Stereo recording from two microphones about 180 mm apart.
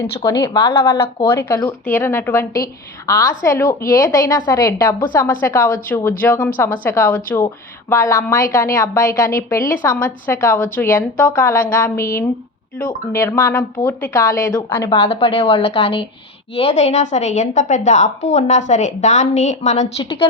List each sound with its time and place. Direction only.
0.4 s a woman's voice: 15° left (ahead or behind)
15.1 s a woman's voice: 35° left (ahead or behind)